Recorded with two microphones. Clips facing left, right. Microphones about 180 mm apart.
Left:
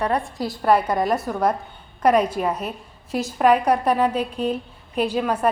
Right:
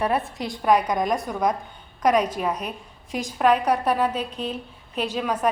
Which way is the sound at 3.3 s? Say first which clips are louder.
Left 2 dB; 10° left (ahead or behind).